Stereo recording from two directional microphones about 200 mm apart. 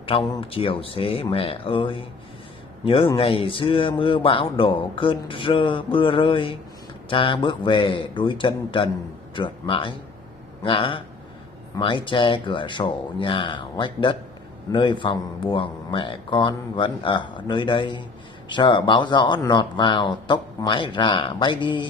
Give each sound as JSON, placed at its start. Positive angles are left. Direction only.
{"t": 0.0, "sound": "a man's voice", "side_deg": 25}